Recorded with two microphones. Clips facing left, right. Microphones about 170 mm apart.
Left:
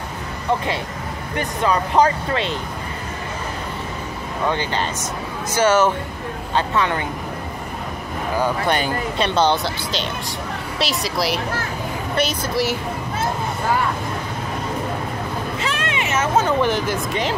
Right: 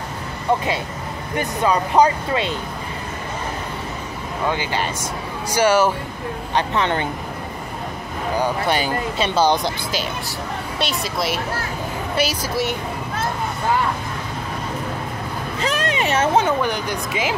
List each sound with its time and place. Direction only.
1.6 s speech: 15° right (ahead or behind)
4.5 s speech: 10° right (ahead or behind)
6.5 s speech: 20° right (ahead or behind)
8.4 s speech: 5° right (ahead or behind)
15.6 s vehicle: 40° right (ahead or behind)
16.6 s speech: centre (ahead or behind)